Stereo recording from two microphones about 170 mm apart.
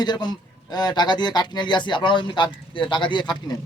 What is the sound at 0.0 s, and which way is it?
A man's voice, 25° left (ahead or behind).